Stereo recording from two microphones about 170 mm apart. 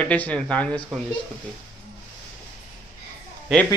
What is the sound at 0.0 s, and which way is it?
Speech, 5° left (ahead or behind).